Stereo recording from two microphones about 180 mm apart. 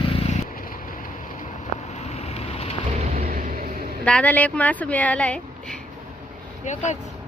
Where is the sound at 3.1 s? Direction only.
50° right (ahead or behind).